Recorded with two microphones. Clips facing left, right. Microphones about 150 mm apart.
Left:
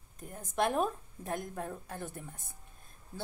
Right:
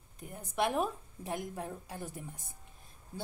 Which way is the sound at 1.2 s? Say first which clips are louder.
Left 1 dB; 10° right (ahead or behind).